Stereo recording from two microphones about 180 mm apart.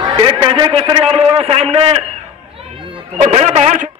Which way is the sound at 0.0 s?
25° right (ahead or behind).